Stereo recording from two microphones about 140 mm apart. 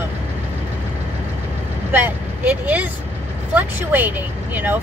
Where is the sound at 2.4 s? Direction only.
10° right (ahead or behind).